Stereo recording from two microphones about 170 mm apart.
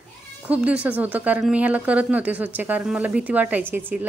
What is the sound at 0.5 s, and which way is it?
Speech, 5° right (ahead or behind).